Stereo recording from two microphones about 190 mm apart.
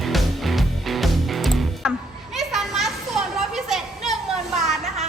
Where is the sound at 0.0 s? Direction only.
Centre (ahead or behind).